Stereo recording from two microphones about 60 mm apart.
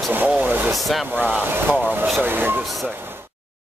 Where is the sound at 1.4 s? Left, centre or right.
Right.